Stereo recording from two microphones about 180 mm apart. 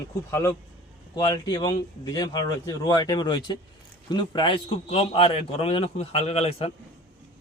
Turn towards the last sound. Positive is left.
turn(degrees=35)  # may be behind; listen again after turning